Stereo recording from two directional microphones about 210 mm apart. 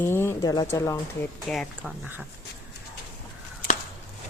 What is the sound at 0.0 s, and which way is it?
Speech, 10° left (ahead or behind).